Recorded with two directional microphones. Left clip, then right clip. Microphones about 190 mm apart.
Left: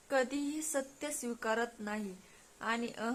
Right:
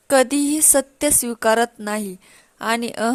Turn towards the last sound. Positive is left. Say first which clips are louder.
# right 15 dB
turn(degrees=-55)  # may be behind; listen again after turning